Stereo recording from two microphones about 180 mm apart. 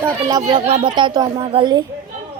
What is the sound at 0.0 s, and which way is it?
Speech, 15° right (ahead or behind).